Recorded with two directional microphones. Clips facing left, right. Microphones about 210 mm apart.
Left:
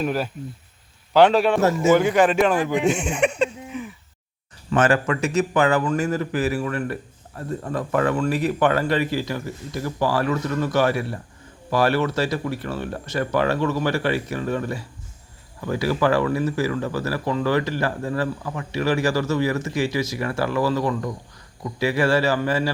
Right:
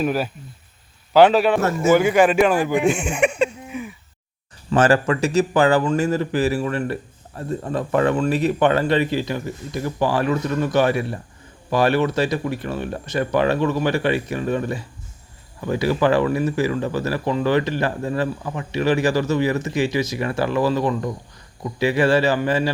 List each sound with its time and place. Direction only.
0.0 s a man's voice: 5° right (ahead or behind)
2.9 s a sound: 10° right (ahead or behind)
4.7 s speech: 35° right (ahead or behind)